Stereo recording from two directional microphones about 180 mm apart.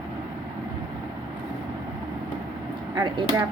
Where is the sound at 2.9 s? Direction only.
25° right (ahead or behind).